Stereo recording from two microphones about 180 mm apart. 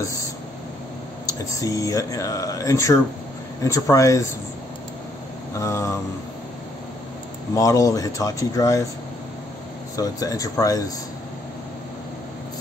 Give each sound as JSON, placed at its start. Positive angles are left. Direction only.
{"t": 1.5, "sound": "speech", "side_deg": 20}
{"t": 5.6, "sound": "speech", "side_deg": 15}
{"t": 7.5, "sound": "speech", "side_deg": 20}
{"t": 9.9, "sound": "speech", "side_deg": 20}